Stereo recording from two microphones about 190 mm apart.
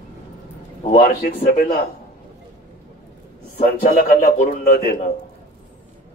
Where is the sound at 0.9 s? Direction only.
50° left (ahead or behind).